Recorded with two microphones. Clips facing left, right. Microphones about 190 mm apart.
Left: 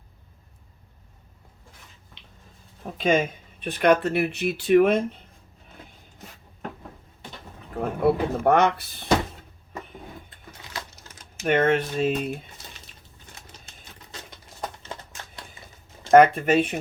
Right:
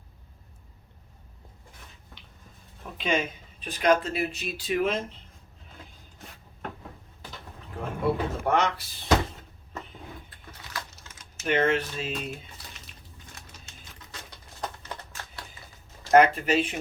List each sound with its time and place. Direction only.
2.8 s speech: 45° left (ahead or behind); by 5.0 s 60° left (ahead or behind)
8.0 s speech: 60° left (ahead or behind)
10.2 s a sound: 20° left (ahead or behind)
11.1 s typing: 35° left (ahead or behind)
11.4 s speech: 50° left (ahead or behind)
16.1 s speech: 50° left (ahead or behind)